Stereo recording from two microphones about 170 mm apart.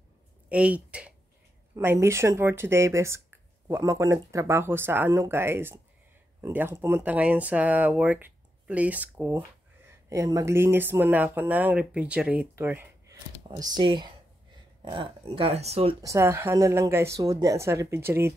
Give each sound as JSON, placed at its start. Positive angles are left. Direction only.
{"t": 0.5, "sound": "speech", "side_deg": -5}
{"t": 16.0, "sound": "speech", "side_deg": -15}